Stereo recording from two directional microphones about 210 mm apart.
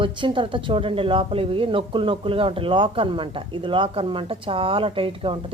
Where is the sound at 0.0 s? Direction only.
25° right (ahead or behind).